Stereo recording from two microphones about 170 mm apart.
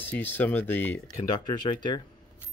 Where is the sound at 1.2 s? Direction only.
25° left (ahead or behind).